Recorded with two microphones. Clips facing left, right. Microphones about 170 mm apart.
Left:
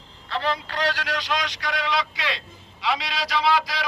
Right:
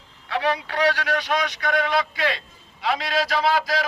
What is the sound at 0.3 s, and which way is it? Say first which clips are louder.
A man's voice: right 3 dB; 65° right (ahead or behind).